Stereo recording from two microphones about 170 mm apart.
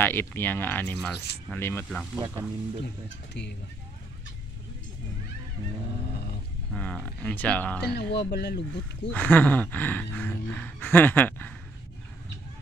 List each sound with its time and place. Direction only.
0.0 s speech: 10° left (ahead or behind)
2.1 s speech: 20° right (ahead or behind)
3.4 s speech: 90° left
6.7 s speech: 5° left (ahead or behind)
7.9 s speech: 75° left (ahead or behind)
9.1 s speech: 10° left (ahead or behind)